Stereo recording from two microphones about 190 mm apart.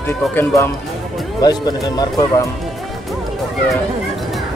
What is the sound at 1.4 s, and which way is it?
Speech, 20° left (ahead or behind).